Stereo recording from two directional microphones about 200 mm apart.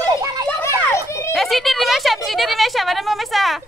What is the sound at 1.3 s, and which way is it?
A woman's voice, centre (ahead or behind).